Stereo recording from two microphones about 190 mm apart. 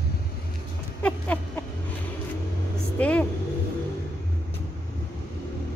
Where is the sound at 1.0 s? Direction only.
5° left (ahead or behind).